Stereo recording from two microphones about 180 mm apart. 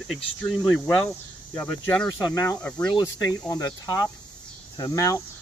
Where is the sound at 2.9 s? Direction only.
20° left (ahead or behind).